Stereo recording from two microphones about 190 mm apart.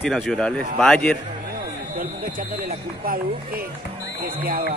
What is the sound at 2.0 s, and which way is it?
Speech, 50° right (ahead or behind).